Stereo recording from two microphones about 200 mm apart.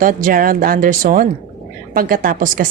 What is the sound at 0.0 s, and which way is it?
Speech, 40° right (ahead or behind).